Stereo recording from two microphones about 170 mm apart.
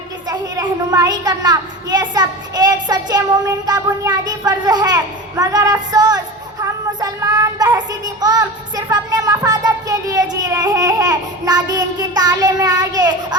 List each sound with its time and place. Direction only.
0.3 s a child's voice: 20° right (ahead or behind)